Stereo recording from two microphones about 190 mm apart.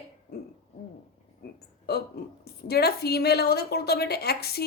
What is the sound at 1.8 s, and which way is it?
A woman's voice, 55° left (ahead or behind).